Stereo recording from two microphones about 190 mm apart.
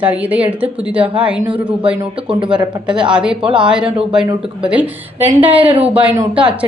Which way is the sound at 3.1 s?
5° right (ahead or behind).